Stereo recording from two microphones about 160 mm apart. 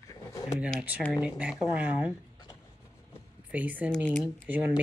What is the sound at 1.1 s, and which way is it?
Speech, 5° right (ahead or behind).